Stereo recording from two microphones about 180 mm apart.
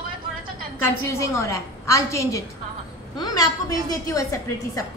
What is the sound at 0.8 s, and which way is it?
A woman's voice, 15° left (ahead or behind).